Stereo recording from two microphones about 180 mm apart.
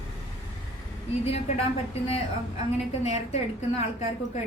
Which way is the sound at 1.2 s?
35° left (ahead or behind).